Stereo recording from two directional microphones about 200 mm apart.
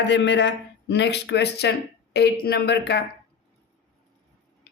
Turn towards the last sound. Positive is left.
turn(degrees=55)  # may be behind; listen again after turning